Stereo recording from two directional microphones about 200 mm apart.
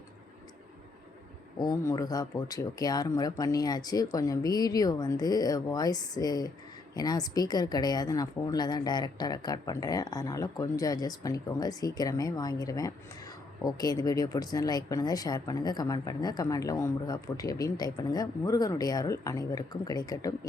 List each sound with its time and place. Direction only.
1.5 s speech: 15° left (ahead or behind)